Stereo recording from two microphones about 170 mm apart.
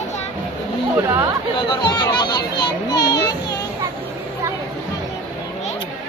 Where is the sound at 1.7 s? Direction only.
25° left (ahead or behind).